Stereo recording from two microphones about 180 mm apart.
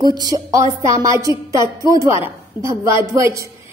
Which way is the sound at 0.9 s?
15° right (ahead or behind).